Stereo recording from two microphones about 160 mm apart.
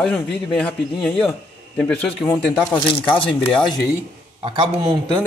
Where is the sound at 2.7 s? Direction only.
30° left (ahead or behind).